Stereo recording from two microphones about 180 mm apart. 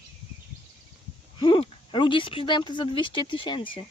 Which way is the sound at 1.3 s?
30° left (ahead or behind).